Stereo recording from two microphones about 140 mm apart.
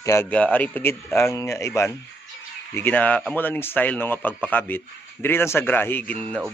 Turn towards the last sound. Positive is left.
turn(degrees=10)  # may be behind; listen again after turning